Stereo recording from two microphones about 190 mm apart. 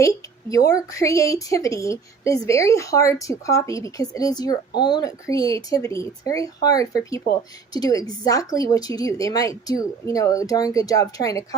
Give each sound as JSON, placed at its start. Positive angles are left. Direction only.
{"t": 0.5, "sound": "a woman's voice", "side_deg": 15}